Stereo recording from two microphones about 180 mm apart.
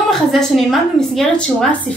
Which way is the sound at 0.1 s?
Centre (ahead or behind).